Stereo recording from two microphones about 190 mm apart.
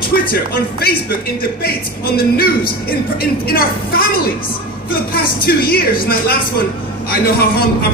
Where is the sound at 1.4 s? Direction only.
55° left (ahead or behind).